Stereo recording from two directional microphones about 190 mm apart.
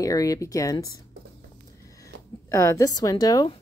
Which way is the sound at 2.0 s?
15° left (ahead or behind).